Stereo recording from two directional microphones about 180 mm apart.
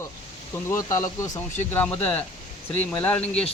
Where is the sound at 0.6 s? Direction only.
15° left (ahead or behind).